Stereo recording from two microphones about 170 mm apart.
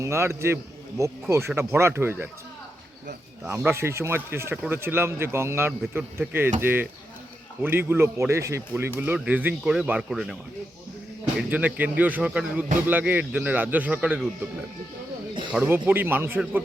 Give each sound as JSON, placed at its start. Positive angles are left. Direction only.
{"t": 0.0, "sound": "speech", "side_deg": -15}
{"t": 3.4, "sound": "speech", "side_deg": -10}
{"t": 11.3, "sound": "speech", "side_deg": -10}
{"t": 15.5, "sound": "speech", "side_deg": -10}